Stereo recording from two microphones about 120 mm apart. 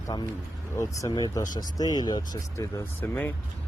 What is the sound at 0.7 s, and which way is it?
Speech, 25° left (ahead or behind).